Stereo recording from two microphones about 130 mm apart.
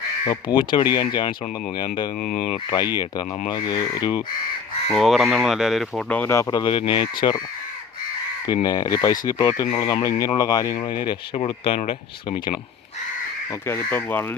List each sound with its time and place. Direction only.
0.3 s speech: 35° left (ahead or behind)
2.4 s speech: 35° left (ahead or behind)
4.9 s speech: centre (ahead or behind)
6.1 s speech: 15° left (ahead or behind)
6.5 s speech: 40° left (ahead or behind)
8.6 s speech: 30° left (ahead or behind)
13.7 s speech: 15° left (ahead or behind)